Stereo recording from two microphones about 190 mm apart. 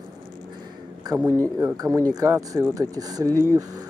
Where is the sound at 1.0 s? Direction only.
20° right (ahead or behind).